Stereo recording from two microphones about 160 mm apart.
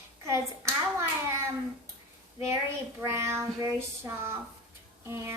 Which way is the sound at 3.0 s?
15° right (ahead or behind).